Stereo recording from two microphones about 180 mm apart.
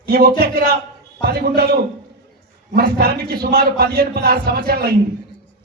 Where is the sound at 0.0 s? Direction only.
60° right (ahead or behind).